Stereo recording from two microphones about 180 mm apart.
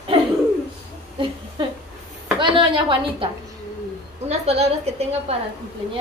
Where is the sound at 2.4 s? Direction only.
25° right (ahead or behind).